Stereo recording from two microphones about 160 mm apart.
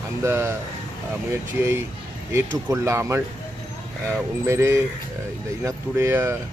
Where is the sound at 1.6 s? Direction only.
15° right (ahead or behind).